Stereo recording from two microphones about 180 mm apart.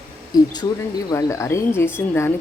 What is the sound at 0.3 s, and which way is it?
Speech, 20° left (ahead or behind).